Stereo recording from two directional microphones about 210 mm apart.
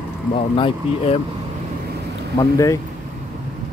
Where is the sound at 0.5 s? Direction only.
25° left (ahead or behind).